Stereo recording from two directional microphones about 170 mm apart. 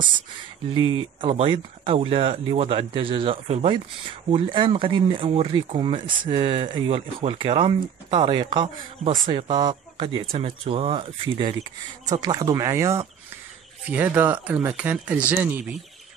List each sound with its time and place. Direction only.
0.7 s speech: 30° right (ahead or behind)
12.2 s speech: 20° right (ahead or behind)